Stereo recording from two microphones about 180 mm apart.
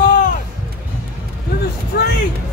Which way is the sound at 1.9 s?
65° left (ahead or behind).